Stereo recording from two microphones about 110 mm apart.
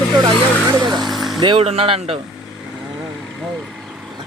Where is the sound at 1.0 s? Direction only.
Centre (ahead or behind).